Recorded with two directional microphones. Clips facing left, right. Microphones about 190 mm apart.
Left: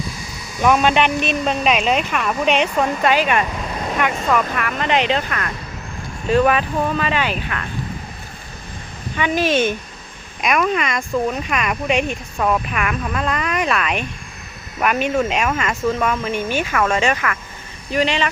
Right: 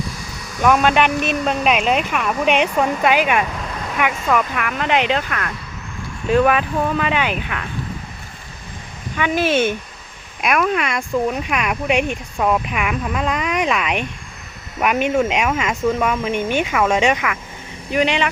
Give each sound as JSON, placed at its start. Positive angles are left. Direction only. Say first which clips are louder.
{"t": 0.6, "sound": "speech", "louder": "even", "side_deg": 0}
{"t": 9.1, "sound": "speech", "louder": "even", "side_deg": -10}